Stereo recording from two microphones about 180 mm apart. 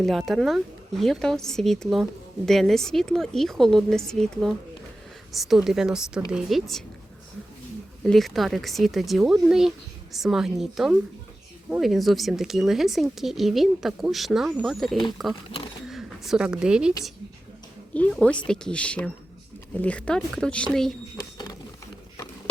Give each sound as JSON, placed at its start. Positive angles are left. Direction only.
{"t": 0.0, "sound": "speech", "side_deg": 0}
{"t": 8.0, "sound": "speech", "side_deg": 0}
{"t": 15.5, "sound": "speech", "side_deg": 30}
{"t": 15.9, "sound": "a woman's voice", "side_deg": 0}
{"t": 17.9, "sound": "a woman's voice", "side_deg": 5}
{"t": 21.2, "sound": "a sound", "side_deg": 25}